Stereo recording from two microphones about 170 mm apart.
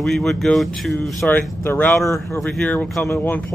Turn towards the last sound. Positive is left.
turn(degrees=10)  # may be behind; listen again after turning